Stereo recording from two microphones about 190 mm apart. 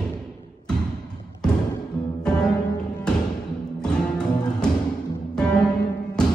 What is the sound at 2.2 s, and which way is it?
Music, 5° left (ahead or behind).